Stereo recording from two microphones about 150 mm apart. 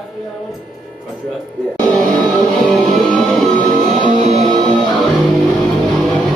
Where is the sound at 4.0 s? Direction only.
45° right (ahead or behind).